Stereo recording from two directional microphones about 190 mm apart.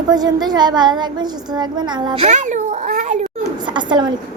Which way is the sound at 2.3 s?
40° right (ahead or behind).